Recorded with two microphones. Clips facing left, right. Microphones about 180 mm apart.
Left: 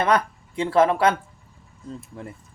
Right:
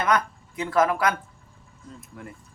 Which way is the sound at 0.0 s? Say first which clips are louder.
Left 3 dB; 30° left (ahead or behind).